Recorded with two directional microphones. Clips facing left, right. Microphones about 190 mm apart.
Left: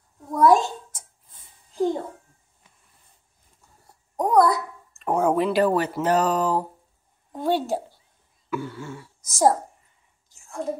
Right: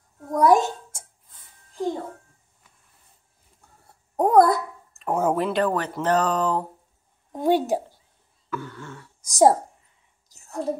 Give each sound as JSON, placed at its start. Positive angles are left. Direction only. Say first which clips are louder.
{"t": 0.4, "sound": "a sound", "louder": "even", "side_deg": -20}
{"t": 4.2, "sound": "a sound", "louder": "right 2 dB", "side_deg": -55}
{"t": 4.9, "sound": "speech", "louder": "left 2 dB", "side_deg": 0}
{"t": 7.3, "sound": "a woman's voice", "louder": "right 3 dB", "side_deg": -15}
{"t": 8.5, "sound": "throat clearing", "louder": "left 4 dB", "side_deg": 10}
{"t": 9.2, "sound": "a child's voice", "louder": "right 3 dB", "side_deg": -15}
{"t": 10.3, "sound": "whispering", "louder": "right 2 dB", "side_deg": -40}